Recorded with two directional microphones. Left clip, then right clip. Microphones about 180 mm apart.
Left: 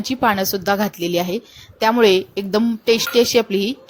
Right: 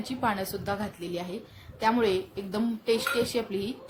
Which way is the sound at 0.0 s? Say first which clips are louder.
Left 11 dB; 45° left (ahead or behind).